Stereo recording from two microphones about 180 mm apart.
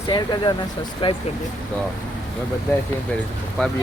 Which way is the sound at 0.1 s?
25° left (ahead or behind).